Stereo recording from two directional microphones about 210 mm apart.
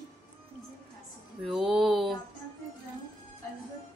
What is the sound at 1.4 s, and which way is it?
Music, centre (ahead or behind).